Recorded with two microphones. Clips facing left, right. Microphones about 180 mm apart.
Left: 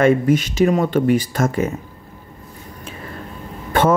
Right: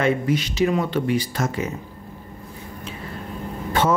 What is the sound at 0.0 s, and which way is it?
Speech, 50° left (ahead or behind).